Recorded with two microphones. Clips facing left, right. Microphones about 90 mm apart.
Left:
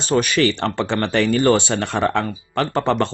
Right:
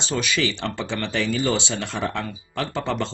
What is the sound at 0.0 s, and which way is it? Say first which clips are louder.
Speech: left 7 dB; 50° left (ahead or behind).